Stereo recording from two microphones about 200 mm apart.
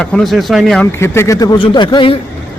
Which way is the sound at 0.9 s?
15° left (ahead or behind).